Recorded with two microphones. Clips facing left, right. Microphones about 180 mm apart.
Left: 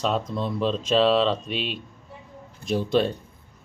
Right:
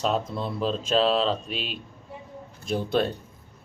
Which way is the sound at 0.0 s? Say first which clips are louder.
Left 1 dB; 5° right (ahead or behind).